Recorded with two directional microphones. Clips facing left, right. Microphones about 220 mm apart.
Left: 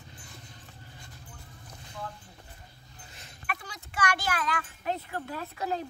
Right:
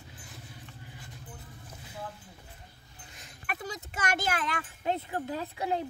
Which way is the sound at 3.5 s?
40° right (ahead or behind).